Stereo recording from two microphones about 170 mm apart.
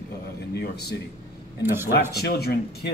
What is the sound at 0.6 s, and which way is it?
Speech, 70° left (ahead or behind).